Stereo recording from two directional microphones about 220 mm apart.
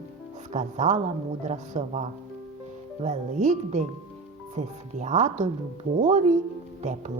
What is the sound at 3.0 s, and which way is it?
A woman's voice, 35° right (ahead or behind).